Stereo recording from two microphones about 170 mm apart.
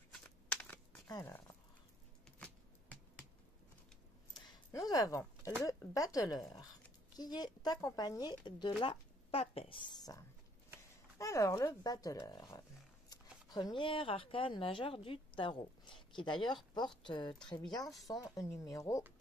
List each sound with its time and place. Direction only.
0.1 s computer keyboard: 5° left (ahead or behind)
1.0 s speech: 20° left (ahead or behind)
2.2 s shuffling cards: 5° left (ahead or behind)
4.3 s a sound: 20° left (ahead or behind)
5.4 s a woman's voice: 20° left (ahead or behind)